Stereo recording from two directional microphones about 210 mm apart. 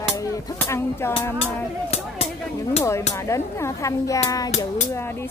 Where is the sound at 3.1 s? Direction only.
15° left (ahead or behind).